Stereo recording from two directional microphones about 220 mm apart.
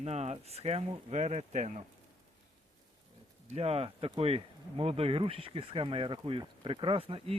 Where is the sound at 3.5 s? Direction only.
25° right (ahead or behind).